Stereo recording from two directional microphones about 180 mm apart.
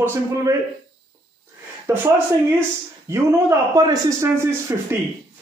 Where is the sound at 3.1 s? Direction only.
20° right (ahead or behind).